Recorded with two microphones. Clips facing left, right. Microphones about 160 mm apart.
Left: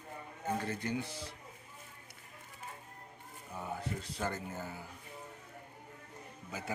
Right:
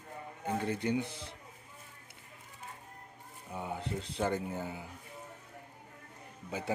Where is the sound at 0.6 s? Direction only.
20° right (ahead or behind).